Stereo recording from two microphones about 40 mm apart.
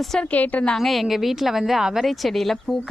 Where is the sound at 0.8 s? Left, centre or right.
Centre.